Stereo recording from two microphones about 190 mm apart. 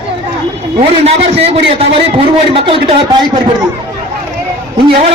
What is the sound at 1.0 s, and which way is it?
A man's voice, 30° right (ahead or behind).